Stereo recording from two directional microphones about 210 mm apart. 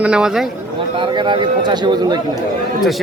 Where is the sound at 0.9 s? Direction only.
25° right (ahead or behind).